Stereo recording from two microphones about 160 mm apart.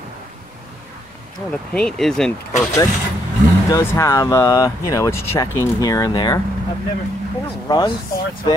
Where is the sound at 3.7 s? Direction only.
20° left (ahead or behind).